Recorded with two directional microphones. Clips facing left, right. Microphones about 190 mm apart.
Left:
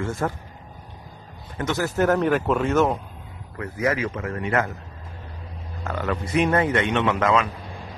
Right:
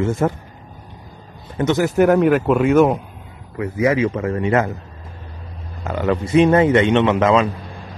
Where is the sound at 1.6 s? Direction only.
20° right (ahead or behind).